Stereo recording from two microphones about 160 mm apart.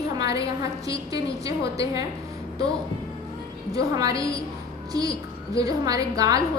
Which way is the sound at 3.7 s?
20° right (ahead or behind).